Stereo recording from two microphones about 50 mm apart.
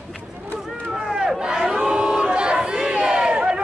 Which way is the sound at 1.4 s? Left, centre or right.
Centre.